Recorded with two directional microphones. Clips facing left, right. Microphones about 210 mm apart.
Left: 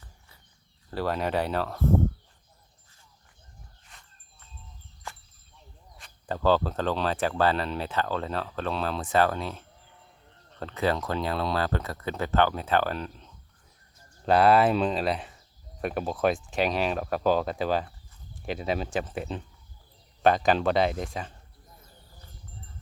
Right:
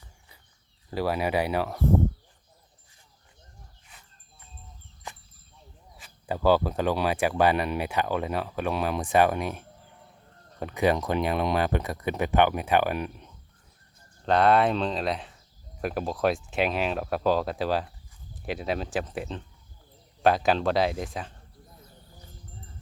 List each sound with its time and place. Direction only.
0.9 s speech: 10° right (ahead or behind)
5.0 s a sound: 15° right (ahead or behind)
6.0 s speech: 10° right (ahead or behind)
14.3 s speech: 5° left (ahead or behind)